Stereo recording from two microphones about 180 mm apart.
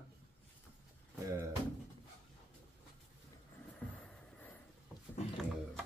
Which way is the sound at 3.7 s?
5° left (ahead or behind).